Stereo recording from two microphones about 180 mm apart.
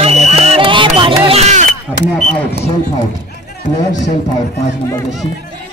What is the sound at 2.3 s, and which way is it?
Speech, 10° left (ahead or behind).